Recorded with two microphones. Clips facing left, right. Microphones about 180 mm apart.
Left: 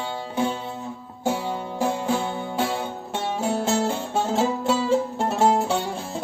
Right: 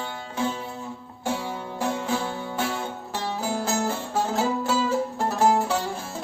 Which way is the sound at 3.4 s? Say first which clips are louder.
Left 4 dB; 25° left (ahead or behind).